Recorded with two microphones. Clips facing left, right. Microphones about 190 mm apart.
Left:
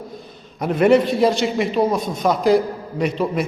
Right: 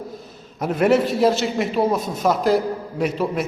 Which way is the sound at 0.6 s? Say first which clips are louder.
Left 3 dB; 5° right (ahead or behind).